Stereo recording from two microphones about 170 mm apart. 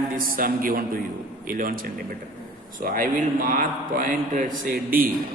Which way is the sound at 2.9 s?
60° right (ahead or behind).